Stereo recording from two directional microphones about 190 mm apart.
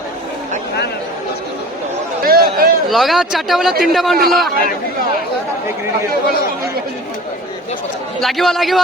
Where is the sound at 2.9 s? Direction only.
Centre (ahead or behind).